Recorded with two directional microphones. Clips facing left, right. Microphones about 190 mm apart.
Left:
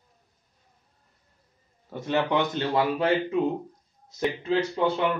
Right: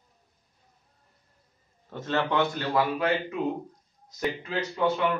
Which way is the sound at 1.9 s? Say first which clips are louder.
Left 2 dB; 10° left (ahead or behind).